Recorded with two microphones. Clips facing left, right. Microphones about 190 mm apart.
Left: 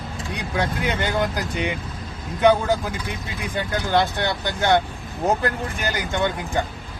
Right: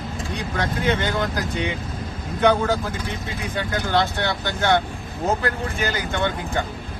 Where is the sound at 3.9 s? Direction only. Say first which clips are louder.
Left 1 dB; 15° left (ahead or behind).